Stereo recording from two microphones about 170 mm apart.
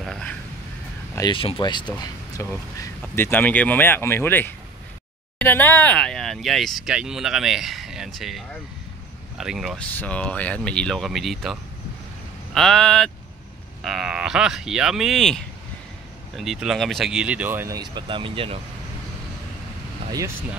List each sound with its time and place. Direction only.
0.0 s a sound: 5° left (ahead or behind)
1.1 s speech: 25° left (ahead or behind); by 11.5 s centre (ahead or behind)
12.5 s speech: 5° left (ahead or behind); by 18.6 s 30° right (ahead or behind)